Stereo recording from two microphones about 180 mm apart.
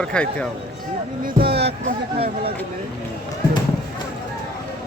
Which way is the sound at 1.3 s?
65° right (ahead or behind).